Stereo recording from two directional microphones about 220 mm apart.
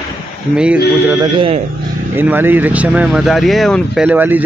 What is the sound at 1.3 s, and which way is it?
Speech, 25° right (ahead or behind).